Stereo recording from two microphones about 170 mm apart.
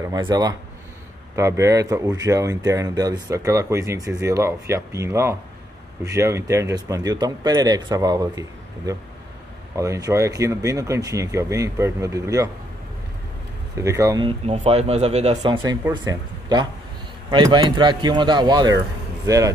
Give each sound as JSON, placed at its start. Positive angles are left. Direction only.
{"t": 0.0, "sound": "speech", "side_deg": -25}
{"t": 13.7, "sound": "speech", "side_deg": -20}
{"t": 14.2, "sound": "speech", "side_deg": -35}
{"t": 15.4, "sound": "speech", "side_deg": -25}